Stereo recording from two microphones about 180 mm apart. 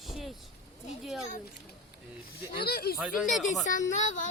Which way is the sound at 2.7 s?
60° left (ahead or behind).